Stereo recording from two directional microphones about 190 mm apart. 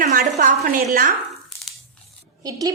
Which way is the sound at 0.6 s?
45° right (ahead or behind).